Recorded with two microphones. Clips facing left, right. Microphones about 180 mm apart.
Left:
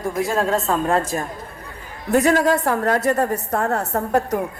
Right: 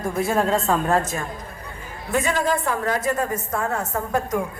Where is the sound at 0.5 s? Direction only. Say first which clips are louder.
Even; centre (ahead or behind).